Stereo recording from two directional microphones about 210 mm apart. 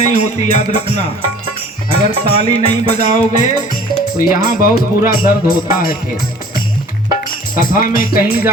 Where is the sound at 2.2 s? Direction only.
30° left (ahead or behind).